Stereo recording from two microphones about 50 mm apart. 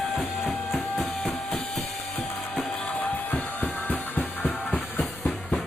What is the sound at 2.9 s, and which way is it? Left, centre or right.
Music, left.